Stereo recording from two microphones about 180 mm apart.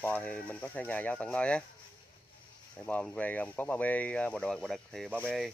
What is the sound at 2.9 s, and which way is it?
Speech, 10° left (ahead or behind).